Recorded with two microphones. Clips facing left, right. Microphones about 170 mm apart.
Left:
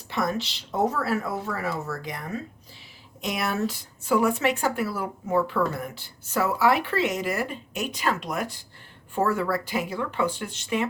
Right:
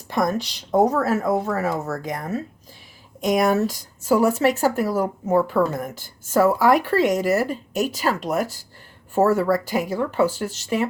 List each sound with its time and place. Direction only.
0.1 s speech: 45° right (ahead or behind)